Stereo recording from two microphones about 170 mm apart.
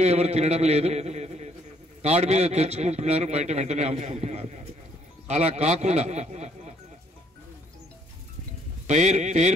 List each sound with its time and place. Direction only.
0.0 s a man's voice: 40° right (ahead or behind)
8.8 s speech: 45° right (ahead or behind)